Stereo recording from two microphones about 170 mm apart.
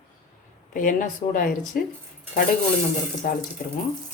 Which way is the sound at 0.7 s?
50° left (ahead or behind).